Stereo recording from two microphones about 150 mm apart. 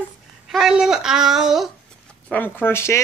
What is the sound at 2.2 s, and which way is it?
Speech, 10° left (ahead or behind).